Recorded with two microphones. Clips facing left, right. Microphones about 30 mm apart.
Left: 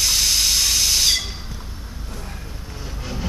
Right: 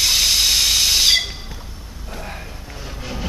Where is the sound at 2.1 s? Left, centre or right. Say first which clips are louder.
Right 6 dB; right.